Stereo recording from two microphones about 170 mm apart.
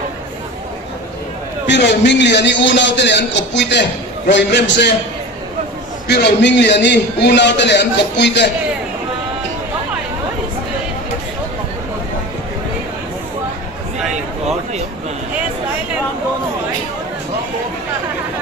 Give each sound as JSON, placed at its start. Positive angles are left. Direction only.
{"t": 1.7, "sound": "a man's voice", "side_deg": 90}
{"t": 6.0, "sound": "a man's voice", "side_deg": 80}